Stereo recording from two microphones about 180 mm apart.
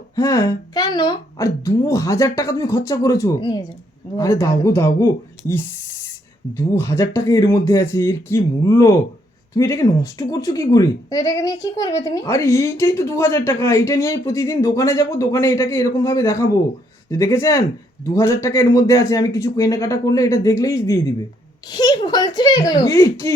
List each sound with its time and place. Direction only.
0.2 s speech: 20° left (ahead or behind)